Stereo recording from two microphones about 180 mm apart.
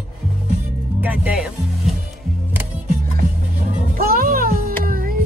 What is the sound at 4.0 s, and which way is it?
Music, 50° right (ahead or behind).